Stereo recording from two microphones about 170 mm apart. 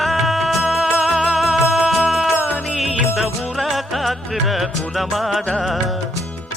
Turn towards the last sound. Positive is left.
turn(degrees=0)  # may be behind; listen again after turning